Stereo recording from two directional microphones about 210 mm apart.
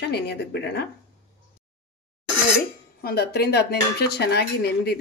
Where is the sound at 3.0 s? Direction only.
50° left (ahead or behind).